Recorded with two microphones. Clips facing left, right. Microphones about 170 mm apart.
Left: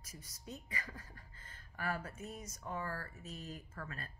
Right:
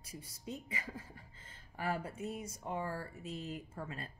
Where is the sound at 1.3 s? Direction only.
25° right (ahead or behind).